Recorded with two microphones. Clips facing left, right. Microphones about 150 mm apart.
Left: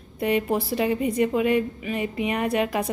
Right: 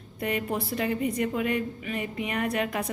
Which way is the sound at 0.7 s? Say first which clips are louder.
Left 4 dB; 15° left (ahead or behind).